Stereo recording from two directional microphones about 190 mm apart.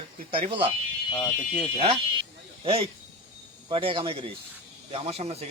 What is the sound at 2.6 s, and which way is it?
Speech, 30° right (ahead or behind).